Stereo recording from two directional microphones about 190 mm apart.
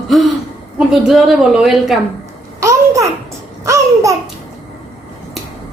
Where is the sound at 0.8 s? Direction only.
Centre (ahead or behind).